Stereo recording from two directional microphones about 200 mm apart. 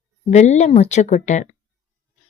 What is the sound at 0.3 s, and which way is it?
Speech, 35° left (ahead or behind).